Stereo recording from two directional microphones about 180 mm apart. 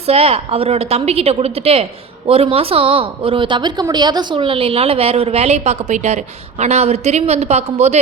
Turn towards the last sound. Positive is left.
turn(degrees=-40)  # may be behind; listen again after turning